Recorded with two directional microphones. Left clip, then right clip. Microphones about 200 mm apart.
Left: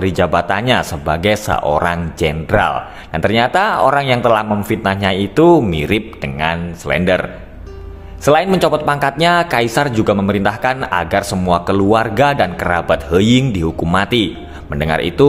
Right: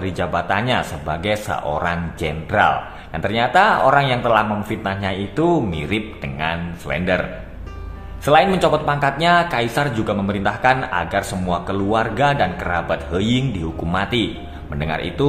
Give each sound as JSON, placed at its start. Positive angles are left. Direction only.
{"t": 0.0, "sound": "speech", "side_deg": 40}
{"t": 8.3, "sound": "speech", "side_deg": 40}